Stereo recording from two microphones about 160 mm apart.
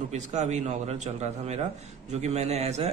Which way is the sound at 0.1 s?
45° right (ahead or behind).